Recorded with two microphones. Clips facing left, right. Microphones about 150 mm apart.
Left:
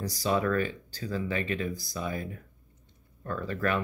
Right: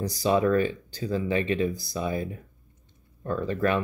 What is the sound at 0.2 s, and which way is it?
Speech, 20° right (ahead or behind).